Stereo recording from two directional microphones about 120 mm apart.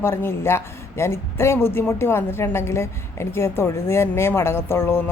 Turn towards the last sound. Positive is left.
turn(degrees=20)  # may be behind; listen again after turning